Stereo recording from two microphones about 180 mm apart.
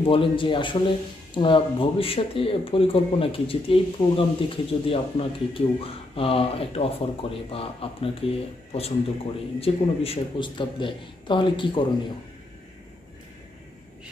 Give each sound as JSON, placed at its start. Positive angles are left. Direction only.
{"t": 0.0, "sound": "speech", "side_deg": 30}